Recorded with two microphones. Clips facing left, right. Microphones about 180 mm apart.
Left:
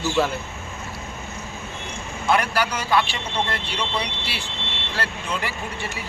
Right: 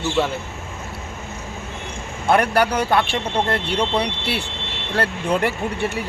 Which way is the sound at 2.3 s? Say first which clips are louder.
Right 5 dB; 60° right (ahead or behind).